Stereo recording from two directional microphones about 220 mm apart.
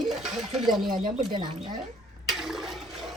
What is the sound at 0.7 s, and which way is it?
Speech, centre (ahead or behind).